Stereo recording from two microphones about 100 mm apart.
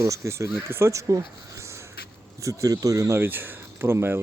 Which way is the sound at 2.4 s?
30° right (ahead or behind).